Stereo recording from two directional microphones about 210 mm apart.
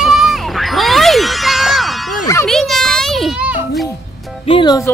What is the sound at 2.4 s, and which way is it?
Children playing, centre (ahead or behind).